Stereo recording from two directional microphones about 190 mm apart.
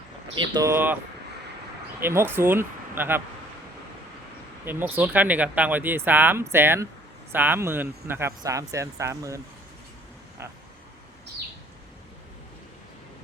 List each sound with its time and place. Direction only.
0.3 s speech: 20° right (ahead or behind)
2.0 s speech: 10° right (ahead or behind)
4.6 s speech: 10° right (ahead or behind)